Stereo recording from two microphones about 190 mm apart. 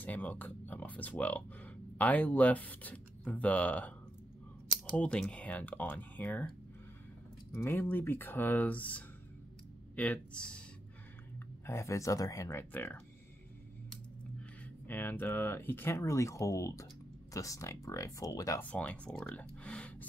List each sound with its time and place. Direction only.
0.0 s speech: 10° left (ahead or behind)
4.9 s speech: 5° left (ahead or behind)
7.5 s speech: 15° left (ahead or behind)
11.6 s speech: 15° left (ahead or behind)
14.9 s speech: 10° left (ahead or behind)